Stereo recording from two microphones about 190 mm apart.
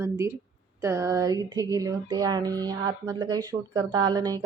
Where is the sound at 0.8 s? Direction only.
15° right (ahead or behind).